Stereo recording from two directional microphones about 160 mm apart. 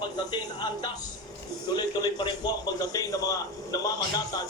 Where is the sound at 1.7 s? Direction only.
25° left (ahead or behind).